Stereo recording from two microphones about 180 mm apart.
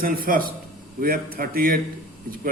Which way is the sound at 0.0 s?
50° right (ahead or behind).